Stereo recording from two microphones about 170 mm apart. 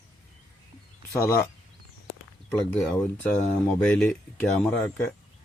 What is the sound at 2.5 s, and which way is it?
Speech, 5° left (ahead or behind).